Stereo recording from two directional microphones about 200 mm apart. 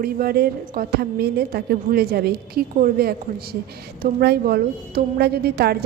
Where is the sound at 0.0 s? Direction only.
50° right (ahead or behind).